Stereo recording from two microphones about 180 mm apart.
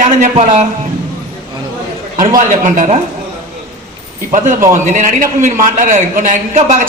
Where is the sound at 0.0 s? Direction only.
40° right (ahead or behind).